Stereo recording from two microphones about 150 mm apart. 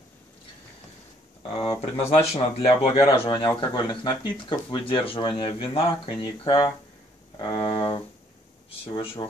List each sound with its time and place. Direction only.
1.6 s speech: 40° left (ahead or behind)
7.3 s a sound: 30° left (ahead or behind)
8.6 s speech: 40° left (ahead or behind)